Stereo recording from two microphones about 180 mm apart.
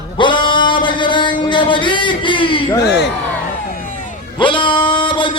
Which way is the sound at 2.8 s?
70° left (ahead or behind).